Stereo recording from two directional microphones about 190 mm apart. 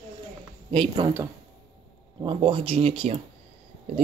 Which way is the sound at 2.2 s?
25° right (ahead or behind).